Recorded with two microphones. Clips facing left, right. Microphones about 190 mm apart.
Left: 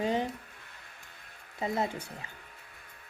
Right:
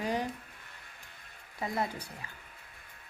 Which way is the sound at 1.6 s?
25° left (ahead or behind).